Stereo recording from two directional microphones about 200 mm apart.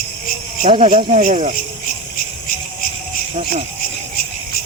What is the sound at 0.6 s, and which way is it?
Speech, 30° right (ahead or behind).